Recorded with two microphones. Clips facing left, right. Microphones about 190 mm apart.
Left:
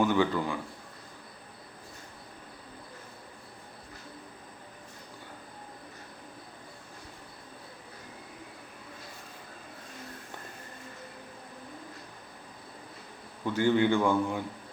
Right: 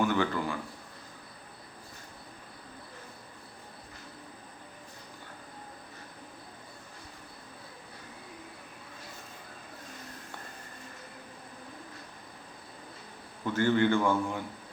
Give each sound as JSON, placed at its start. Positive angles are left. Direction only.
{"t": 0.0, "sound": "speech", "side_deg": 15}
{"t": 13.4, "sound": "a man's voice", "side_deg": 15}